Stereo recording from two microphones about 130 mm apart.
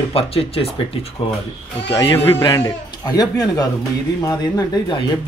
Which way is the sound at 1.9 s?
30° left (ahead or behind).